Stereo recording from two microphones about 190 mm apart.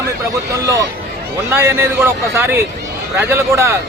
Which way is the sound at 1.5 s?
10° right (ahead or behind).